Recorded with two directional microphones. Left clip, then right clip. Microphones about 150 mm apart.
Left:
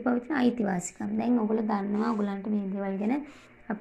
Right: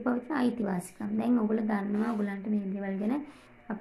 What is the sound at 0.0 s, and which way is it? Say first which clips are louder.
A woman's voice: left 3 dB; 15° left (ahead or behind).